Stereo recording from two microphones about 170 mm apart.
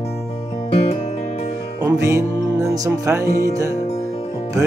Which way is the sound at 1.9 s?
15° right (ahead or behind).